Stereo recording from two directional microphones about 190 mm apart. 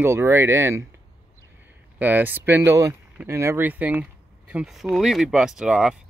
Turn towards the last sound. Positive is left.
turn(degrees=-5)  # may be behind; listen again after turning